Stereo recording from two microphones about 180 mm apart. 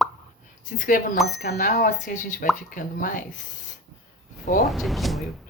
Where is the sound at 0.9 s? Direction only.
50° left (ahead or behind).